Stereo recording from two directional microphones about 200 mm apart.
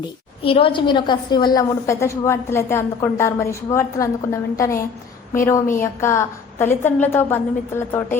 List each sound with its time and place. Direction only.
0.4 s a woman's voice: 25° left (ahead or behind); by 8.0 s 10° left (ahead or behind)